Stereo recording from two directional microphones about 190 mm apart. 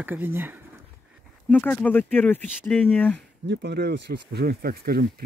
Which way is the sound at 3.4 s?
60° right (ahead or behind).